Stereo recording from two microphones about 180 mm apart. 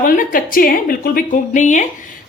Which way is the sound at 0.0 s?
50° left (ahead or behind).